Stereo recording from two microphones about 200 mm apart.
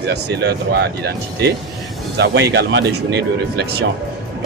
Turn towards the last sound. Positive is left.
turn(degrees=-55)  # may be behind; listen again after turning